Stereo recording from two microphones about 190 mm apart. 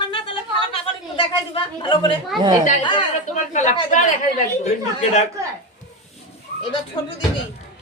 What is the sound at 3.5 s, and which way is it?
Speech, 40° left (ahead or behind).